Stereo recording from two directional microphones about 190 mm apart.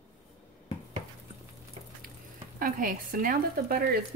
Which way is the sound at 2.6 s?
45° right (ahead or behind).